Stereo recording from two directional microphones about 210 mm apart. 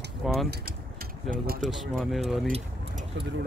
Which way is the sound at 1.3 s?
40° right (ahead or behind).